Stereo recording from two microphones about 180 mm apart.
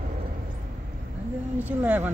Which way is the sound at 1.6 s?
10° right (ahead or behind).